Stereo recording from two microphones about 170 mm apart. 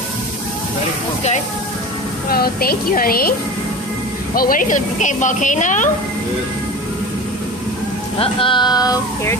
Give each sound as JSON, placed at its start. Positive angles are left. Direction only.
{"t": 2.2, "sound": "a woman's voice", "side_deg": 60}
{"t": 4.4, "sound": "a woman's voice", "side_deg": 55}
{"t": 8.2, "sound": "speech", "side_deg": 30}